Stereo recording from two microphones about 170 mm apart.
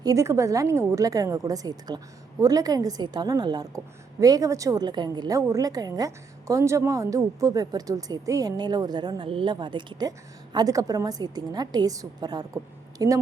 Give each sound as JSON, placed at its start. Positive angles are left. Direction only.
{"t": 0.0, "sound": "a woman's voice", "side_deg": -20}